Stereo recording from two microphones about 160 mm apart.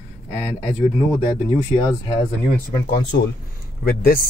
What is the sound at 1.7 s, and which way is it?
Speech, 30° left (ahead or behind).